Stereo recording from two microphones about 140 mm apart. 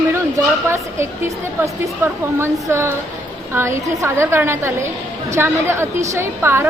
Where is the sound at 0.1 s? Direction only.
20° right (ahead or behind).